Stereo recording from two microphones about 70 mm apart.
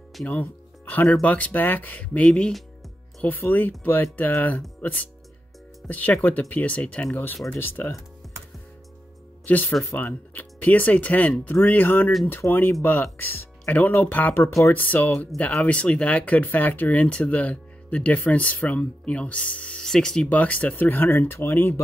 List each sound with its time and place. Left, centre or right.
0.2 s speech: left
3.3 s speech: left
9.5 s speech: left; by 20.2 s centre
20.2 s speech: left